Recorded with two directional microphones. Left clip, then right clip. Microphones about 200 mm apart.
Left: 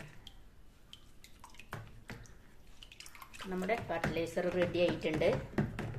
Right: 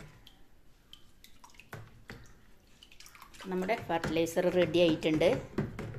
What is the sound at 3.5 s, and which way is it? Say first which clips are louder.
Speech: right 4 dB; 50° right (ahead or behind).